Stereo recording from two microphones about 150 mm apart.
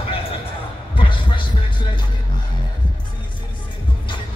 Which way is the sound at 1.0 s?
35° left (ahead or behind).